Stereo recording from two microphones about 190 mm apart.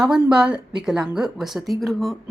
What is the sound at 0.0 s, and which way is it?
A woman's voice, 5° right (ahead or behind).